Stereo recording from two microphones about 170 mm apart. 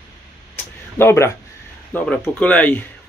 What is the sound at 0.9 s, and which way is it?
Speech, 15° left (ahead or behind).